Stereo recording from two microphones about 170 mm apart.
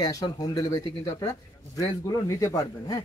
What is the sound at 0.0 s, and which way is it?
Speech, 20° left (ahead or behind).